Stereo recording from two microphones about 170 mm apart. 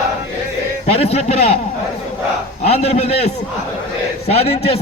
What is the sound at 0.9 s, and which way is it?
Speech, 35° left (ahead or behind).